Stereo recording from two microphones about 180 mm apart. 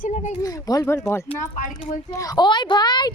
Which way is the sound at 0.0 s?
40° left (ahead or behind).